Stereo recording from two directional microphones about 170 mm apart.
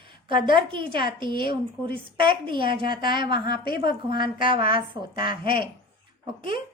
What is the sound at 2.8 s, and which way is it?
Speech, 60° left (ahead or behind).